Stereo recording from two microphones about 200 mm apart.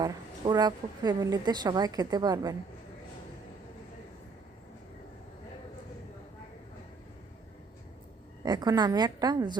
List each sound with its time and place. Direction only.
0.0 s a woman's voice: 20° right (ahead or behind)
8.4 s a woman's voice: 20° right (ahead or behind)